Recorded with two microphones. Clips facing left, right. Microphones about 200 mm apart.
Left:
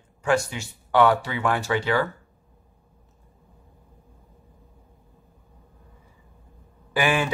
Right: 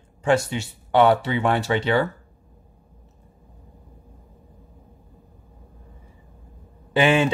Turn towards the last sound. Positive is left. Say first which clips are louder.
# right 5 dB
turn(degrees=-25)  # may be behind; listen again after turning